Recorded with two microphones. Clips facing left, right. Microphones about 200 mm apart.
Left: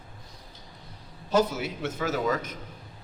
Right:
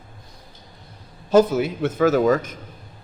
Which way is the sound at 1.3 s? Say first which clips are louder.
Right 9 dB; 55° right (ahead or behind).